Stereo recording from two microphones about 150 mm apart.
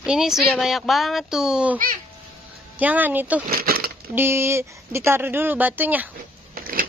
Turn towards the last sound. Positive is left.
turn(degrees=-75)  # may be behind; listen again after turning